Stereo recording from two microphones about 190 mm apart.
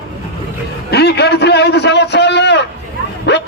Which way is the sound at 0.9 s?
60° left (ahead or behind).